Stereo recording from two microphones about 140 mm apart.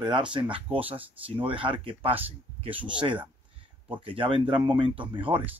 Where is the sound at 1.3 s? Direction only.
40° right (ahead or behind).